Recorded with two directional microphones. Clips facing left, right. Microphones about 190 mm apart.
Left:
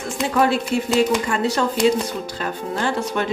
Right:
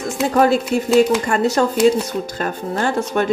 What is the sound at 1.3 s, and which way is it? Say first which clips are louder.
Speech: right 4 dB; 45° right (ahead or behind).